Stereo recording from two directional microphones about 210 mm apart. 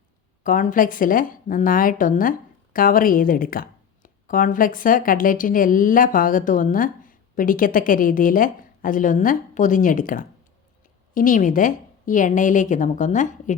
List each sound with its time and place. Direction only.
0.4 s speech: 40° left (ahead or behind)